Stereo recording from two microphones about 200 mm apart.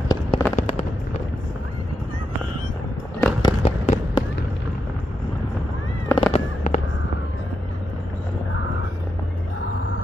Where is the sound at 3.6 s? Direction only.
30° left (ahead or behind).